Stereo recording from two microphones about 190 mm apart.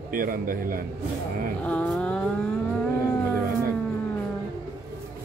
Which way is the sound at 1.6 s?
5° left (ahead or behind).